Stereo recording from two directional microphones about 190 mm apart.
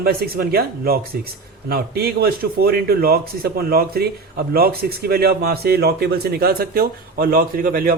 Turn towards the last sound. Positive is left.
turn(degrees=-45)  # may be behind; listen again after turning